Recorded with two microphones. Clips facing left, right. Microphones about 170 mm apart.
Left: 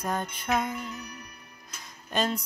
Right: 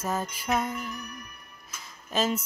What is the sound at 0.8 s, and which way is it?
Music, 25° left (ahead or behind).